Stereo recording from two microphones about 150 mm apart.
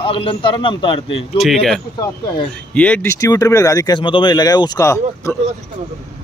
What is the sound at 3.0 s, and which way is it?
Speech, 20° left (ahead or behind).